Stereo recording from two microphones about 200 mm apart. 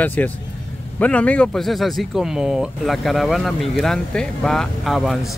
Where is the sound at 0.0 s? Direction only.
10° left (ahead or behind).